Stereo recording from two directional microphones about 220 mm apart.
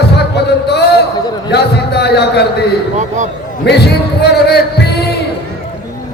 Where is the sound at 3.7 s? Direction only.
50° left (ahead or behind).